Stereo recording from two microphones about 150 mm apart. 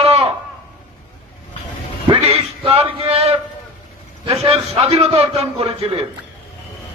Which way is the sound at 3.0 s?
40° right (ahead or behind).